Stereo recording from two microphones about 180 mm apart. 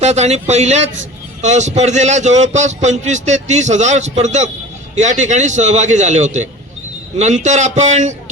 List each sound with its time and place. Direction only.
0.0 s a man's voice: 40° right (ahead or behind)